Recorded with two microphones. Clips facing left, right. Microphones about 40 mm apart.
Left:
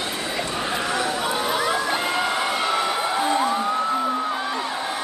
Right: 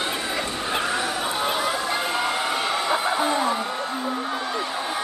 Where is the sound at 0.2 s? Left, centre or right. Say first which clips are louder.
Left 1 dB; centre.